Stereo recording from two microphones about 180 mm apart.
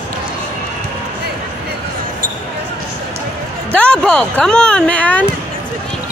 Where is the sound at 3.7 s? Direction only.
5° left (ahead or behind).